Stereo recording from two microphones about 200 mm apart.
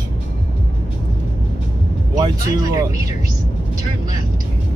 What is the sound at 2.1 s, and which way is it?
Speech, 20° right (ahead or behind).